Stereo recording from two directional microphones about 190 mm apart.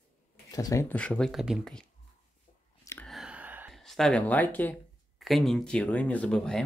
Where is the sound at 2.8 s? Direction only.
15° left (ahead or behind).